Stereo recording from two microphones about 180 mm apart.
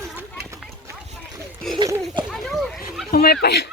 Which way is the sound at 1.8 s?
25° right (ahead or behind).